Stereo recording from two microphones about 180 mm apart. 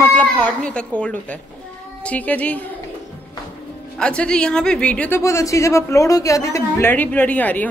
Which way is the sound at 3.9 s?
5° left (ahead or behind).